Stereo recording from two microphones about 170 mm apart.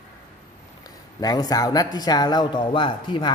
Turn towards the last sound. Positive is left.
turn(degrees=30)  # may be behind; listen again after turning